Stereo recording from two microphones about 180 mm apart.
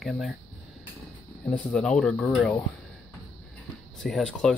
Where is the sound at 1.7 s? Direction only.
5° left (ahead or behind).